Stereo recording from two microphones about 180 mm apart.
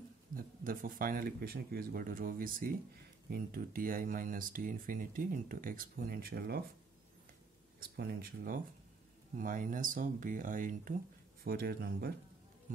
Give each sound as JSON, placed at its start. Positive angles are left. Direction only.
{"t": 0.3, "sound": "a sound", "side_deg": -50}
{"t": 0.7, "sound": "speech", "side_deg": -50}
{"t": 7.9, "sound": "speech", "side_deg": -55}